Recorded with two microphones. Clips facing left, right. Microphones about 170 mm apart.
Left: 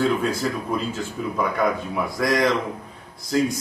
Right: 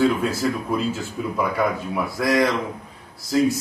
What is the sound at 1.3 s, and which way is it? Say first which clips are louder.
A man's voice: even; centre (ahead or behind).